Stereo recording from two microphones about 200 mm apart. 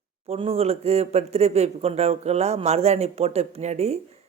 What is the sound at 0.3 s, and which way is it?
Speech, 30° right (ahead or behind).